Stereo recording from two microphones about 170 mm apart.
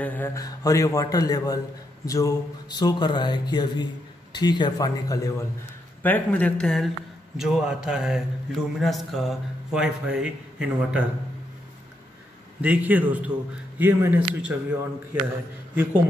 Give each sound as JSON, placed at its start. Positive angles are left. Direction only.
{"t": 0.0, "sound": "speech", "side_deg": 10}
{"t": 6.0, "sound": "a man's voice", "side_deg": 10}
{"t": 12.6, "sound": "a man's voice", "side_deg": -10}